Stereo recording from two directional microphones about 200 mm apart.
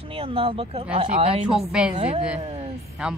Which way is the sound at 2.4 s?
30° right (ahead or behind).